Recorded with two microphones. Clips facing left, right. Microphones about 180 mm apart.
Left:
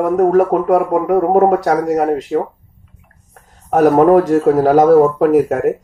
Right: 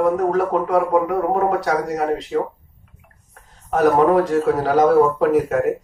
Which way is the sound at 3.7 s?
50° left (ahead or behind).